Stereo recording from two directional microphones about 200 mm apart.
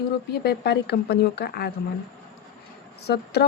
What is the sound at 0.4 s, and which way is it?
Speech, 55° left (ahead or behind).